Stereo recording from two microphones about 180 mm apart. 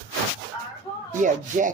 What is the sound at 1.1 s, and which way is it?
Speech, 45° right (ahead or behind).